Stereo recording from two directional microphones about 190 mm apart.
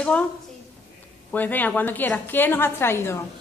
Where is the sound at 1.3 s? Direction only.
10° left (ahead or behind).